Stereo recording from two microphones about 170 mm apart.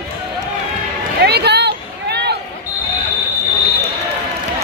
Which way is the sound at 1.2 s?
75° right (ahead or behind).